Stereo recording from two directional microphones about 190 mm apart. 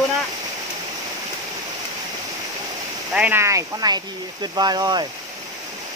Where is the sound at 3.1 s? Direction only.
10° right (ahead or behind).